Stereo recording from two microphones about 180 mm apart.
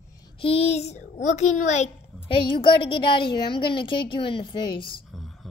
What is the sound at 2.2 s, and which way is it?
A woman's voice, 30° left (ahead or behind).